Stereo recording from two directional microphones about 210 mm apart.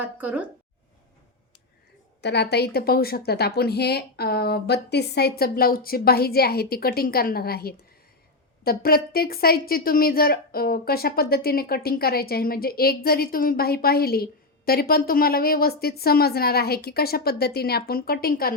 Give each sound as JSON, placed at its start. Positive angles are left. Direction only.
{"t": 0.0, "sound": "speech", "side_deg": -5}
{"t": 2.2, "sound": "speech", "side_deg": 55}